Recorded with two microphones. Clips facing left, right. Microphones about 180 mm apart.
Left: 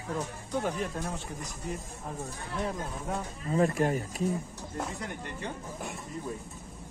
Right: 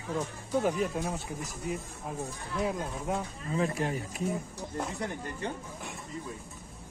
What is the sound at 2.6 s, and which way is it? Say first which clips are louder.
Speech: right 4 dB; 5° right (ahead or behind).